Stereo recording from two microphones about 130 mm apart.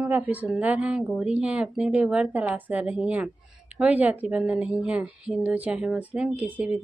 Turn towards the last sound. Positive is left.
turn(degrees=-10)  # may be behind; listen again after turning